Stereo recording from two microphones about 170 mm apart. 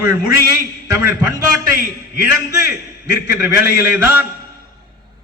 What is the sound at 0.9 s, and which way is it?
Speech, 20° right (ahead or behind).